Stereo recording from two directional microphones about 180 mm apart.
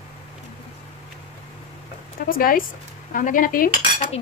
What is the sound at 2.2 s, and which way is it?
Speech, 55° left (ahead or behind).